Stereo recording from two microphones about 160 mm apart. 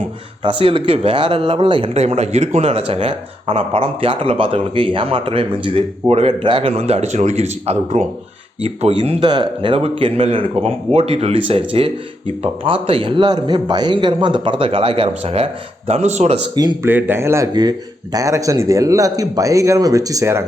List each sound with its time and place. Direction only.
0.4 s speech: 35° right (ahead or behind)
16.8 s speech: 15° right (ahead or behind)